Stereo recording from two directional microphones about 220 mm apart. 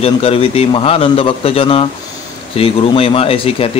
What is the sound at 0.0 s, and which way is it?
Speech, 25° left (ahead or behind).